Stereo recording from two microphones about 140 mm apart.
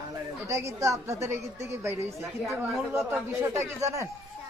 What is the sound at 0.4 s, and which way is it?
A woman's voice, 20° right (ahead or behind).